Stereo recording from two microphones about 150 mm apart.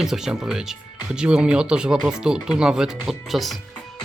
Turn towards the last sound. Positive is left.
turn(degrees=0)  # may be behind; listen again after turning